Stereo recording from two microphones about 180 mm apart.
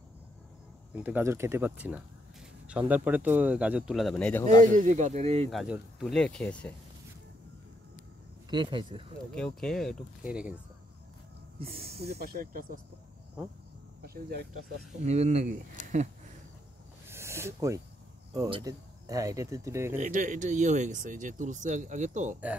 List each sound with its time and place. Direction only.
0.9 s speech: 10° right (ahead or behind); by 4.5 s 10° left (ahead or behind)
4.6 s speech: 45° right (ahead or behind)
5.5 s speech: centre (ahead or behind)
8.5 s speech: 25° right (ahead or behind)
9.3 s speech: 5° left (ahead or behind)
11.6 s speech: 35° right (ahead or behind)
12.2 s speech: 55° right (ahead or behind)
14.0 s speech: 60° right (ahead or behind)
15.0 s speech: 40° right (ahead or behind)
17.1 s a sound: 15° right (ahead or behind)
18.5 s speech: 20° right (ahead or behind)
20.0 s speech: 45° right (ahead or behind)